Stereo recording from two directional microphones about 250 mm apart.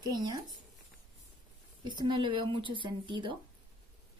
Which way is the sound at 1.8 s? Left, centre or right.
Centre.